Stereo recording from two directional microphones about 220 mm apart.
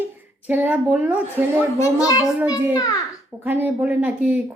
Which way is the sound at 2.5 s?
15° left (ahead or behind).